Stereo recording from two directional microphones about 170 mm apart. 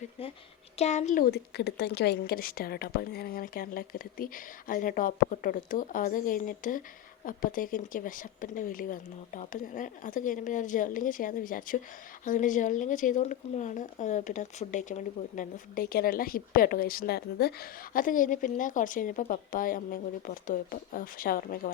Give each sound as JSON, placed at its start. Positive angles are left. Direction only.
{"t": 0.8, "sound": "a woman's voice", "side_deg": 45}